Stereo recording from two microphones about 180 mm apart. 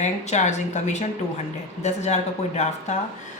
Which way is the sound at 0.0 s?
40° left (ahead or behind).